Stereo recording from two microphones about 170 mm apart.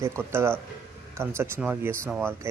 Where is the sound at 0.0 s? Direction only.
15° right (ahead or behind).